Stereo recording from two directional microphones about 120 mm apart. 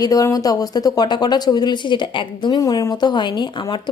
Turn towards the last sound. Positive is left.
turn(degrees=40)  # may be behind; listen again after turning